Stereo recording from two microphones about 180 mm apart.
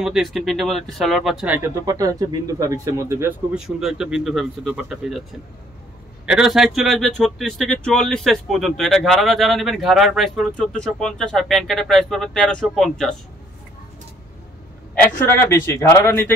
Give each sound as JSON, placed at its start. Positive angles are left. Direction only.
{"t": 0.0, "sound": "a man's voice", "side_deg": 0}
{"t": 1.9, "sound": "speech", "side_deg": -20}
{"t": 3.5, "sound": "a man's voice", "side_deg": -5}
{"t": 6.2, "sound": "a man's voice", "side_deg": -5}
{"t": 15.1, "sound": "speech", "side_deg": 15}